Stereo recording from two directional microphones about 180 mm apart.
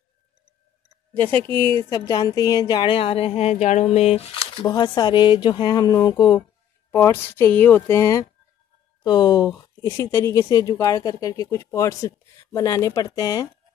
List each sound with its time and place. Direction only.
1.1 s speech: 10° left (ahead or behind)